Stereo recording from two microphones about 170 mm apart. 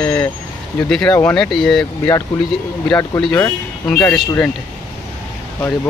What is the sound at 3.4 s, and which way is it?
Speech, 5° left (ahead or behind).